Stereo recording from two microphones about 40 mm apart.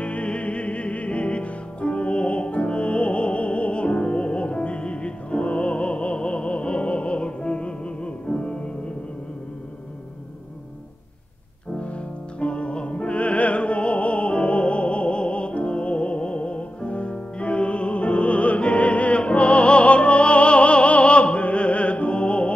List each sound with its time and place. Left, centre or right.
0.0 s music: left
12.4 s music: left